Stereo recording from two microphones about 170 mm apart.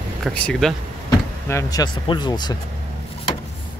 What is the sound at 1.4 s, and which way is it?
Speech, 20° left (ahead or behind).